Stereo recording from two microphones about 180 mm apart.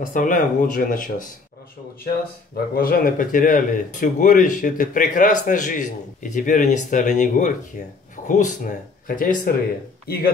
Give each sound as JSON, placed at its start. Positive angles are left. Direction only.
{"t": 0.0, "sound": "speech", "side_deg": 45}
{"t": 2.7, "sound": "speech", "side_deg": 55}